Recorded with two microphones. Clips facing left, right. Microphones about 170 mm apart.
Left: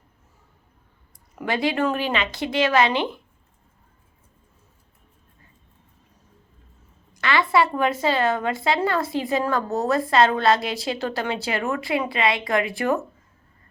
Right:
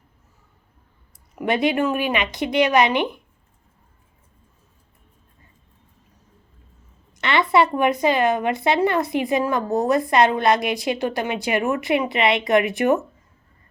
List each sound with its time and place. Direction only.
1.5 s a woman's voice: 20° right (ahead or behind)
7.1 s a woman's voice: 20° right (ahead or behind)